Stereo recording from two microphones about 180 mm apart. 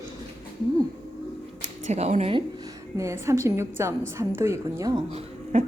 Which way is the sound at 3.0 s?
15° right (ahead or behind).